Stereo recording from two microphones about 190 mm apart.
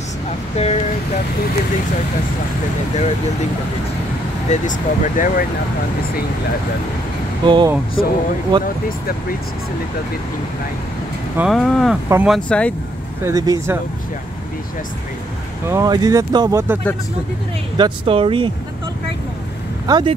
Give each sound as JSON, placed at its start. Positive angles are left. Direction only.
{"t": 0.6, "sound": "speech", "side_deg": 35}
{"t": 4.5, "sound": "speech", "side_deg": 40}
{"t": 7.4, "sound": "speech", "side_deg": -25}
{"t": 11.3, "sound": "speech", "side_deg": 0}
{"t": 12.4, "sound": "speech", "side_deg": 5}
{"t": 13.2, "sound": "speech", "side_deg": -20}
{"t": 15.7, "sound": "speech", "side_deg": -20}
{"t": 17.7, "sound": "speech", "side_deg": -25}
{"t": 19.9, "sound": "speech", "side_deg": -25}